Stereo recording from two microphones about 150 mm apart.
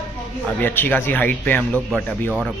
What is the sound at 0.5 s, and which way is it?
Speech, 10° left (ahead or behind).